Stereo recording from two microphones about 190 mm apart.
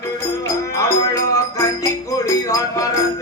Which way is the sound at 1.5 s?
15° left (ahead or behind).